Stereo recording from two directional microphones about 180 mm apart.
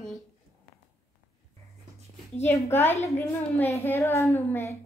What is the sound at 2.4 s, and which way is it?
A child's voice, 15° left (ahead or behind).